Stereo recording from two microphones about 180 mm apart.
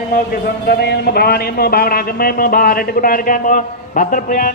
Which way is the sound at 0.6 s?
65° left (ahead or behind).